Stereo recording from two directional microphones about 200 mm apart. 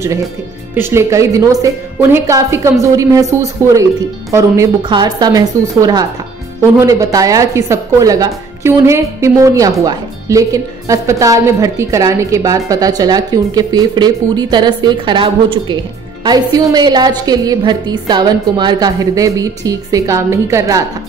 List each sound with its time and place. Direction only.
0.7 s a woman's voice: 10° right (ahead or behind)